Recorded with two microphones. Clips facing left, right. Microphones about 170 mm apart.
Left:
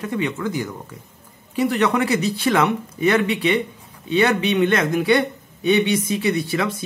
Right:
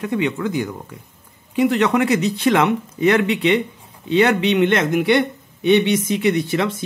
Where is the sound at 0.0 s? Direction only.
20° right (ahead or behind).